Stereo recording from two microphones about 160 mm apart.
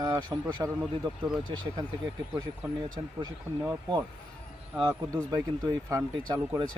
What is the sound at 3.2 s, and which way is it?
Speech, 25° right (ahead or behind).